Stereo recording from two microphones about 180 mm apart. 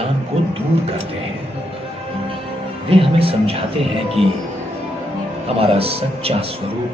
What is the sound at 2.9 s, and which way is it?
Speech, 30° right (ahead or behind).